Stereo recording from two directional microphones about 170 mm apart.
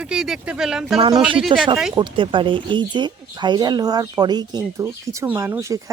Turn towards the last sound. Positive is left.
turn(degrees=-20)  # may be behind; listen again after turning